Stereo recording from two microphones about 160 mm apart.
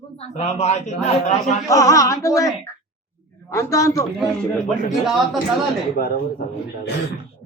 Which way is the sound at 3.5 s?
20° left (ahead or behind).